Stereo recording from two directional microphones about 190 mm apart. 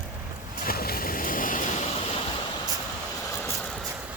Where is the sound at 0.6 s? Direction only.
50° left (ahead or behind).